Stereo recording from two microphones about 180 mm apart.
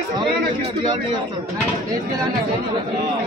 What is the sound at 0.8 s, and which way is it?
Speech, 25° right (ahead or behind).